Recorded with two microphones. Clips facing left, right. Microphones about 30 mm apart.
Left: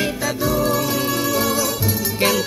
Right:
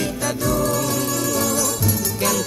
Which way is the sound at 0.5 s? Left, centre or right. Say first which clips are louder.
Left 1 dB; centre.